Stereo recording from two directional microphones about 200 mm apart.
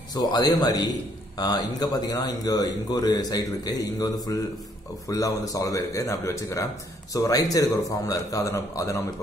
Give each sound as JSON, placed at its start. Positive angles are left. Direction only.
{"t": 0.1, "sound": "a man's voice", "side_deg": 20}